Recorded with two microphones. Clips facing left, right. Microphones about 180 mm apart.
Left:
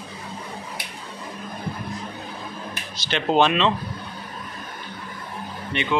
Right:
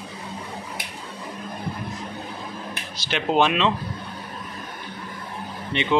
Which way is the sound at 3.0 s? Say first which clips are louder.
Left 1 dB; 5° right (ahead or behind).